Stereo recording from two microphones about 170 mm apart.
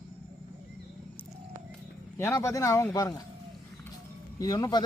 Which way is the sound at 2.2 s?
15° left (ahead or behind).